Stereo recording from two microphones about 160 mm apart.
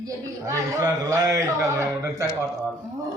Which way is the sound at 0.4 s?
20° right (ahead or behind).